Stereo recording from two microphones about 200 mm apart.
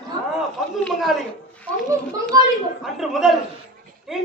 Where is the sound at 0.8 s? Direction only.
Centre (ahead or behind).